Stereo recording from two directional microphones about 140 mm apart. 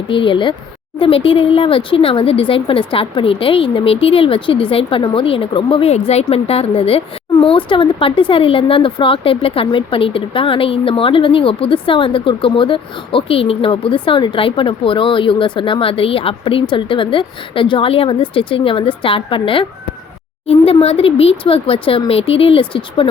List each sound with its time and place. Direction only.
0.1 s a woman's voice: 35° left (ahead or behind)